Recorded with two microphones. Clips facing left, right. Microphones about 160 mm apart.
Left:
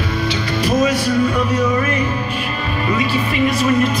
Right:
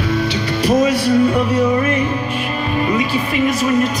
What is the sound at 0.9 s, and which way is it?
Music, 30° right (ahead or behind).